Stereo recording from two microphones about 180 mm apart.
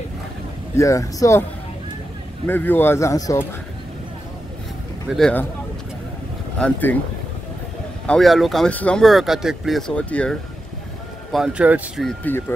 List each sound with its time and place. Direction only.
0.7 s speech: 15° left (ahead or behind)
2.4 s speech: 10° left (ahead or behind)
5.1 s speech: 5° left (ahead or behind)
6.6 s speech: 10° left (ahead or behind)
8.1 s speech: centre (ahead or behind)
11.3 s speech: 5° right (ahead or behind)
12.1 s speech: 10° left (ahead or behind)